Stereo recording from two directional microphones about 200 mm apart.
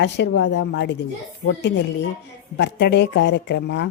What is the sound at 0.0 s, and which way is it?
Speech, 60° left (ahead or behind).